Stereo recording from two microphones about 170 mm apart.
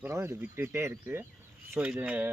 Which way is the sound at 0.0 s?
15° right (ahead or behind).